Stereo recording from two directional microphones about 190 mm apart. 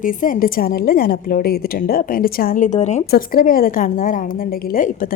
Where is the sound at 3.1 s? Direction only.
50° left (ahead or behind).